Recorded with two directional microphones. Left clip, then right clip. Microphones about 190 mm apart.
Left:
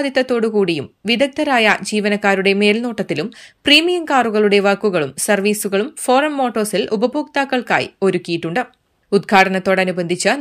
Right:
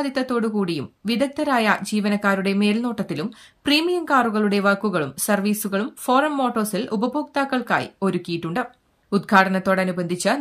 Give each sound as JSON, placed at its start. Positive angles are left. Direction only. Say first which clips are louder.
{"t": 0.0, "sound": "speech", "louder": "left 7 dB", "side_deg": 10}